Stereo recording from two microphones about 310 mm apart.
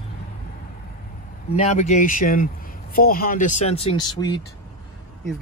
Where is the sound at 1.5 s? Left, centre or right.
Left.